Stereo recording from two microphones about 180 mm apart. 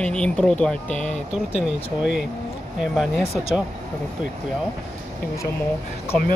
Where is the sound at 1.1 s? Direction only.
35° left (ahead or behind).